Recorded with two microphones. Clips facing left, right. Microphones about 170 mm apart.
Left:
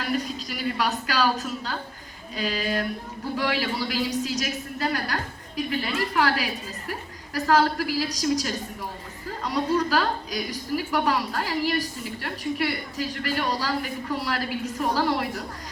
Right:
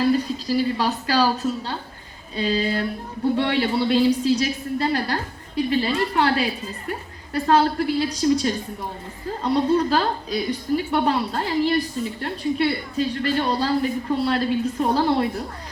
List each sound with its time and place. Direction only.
0.0 s a woman's voice: 30° right (ahead or behind)